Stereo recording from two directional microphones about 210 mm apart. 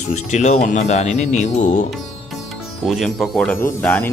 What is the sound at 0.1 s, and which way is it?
Speech, 35° left (ahead or behind).